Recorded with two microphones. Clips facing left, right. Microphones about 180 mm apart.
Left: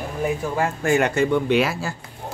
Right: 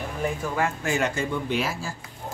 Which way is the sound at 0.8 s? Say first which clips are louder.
Left 7 dB; 60° left (ahead or behind).